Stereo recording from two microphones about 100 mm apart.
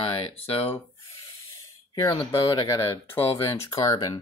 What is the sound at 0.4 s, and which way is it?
Speech, 70° left (ahead or behind).